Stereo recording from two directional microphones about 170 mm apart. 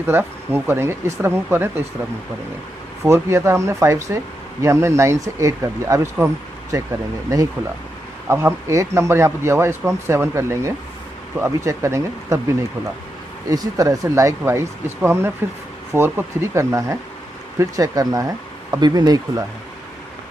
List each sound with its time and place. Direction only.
0.0 s speech: 10° right (ahead or behind)
3.0 s speech: 15° right (ahead or behind)